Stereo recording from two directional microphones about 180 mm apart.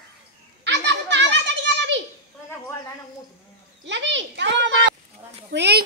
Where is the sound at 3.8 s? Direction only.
85° right.